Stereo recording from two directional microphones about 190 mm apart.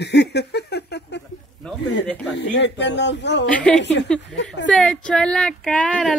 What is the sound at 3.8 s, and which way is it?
Speech, 65° left (ahead or behind).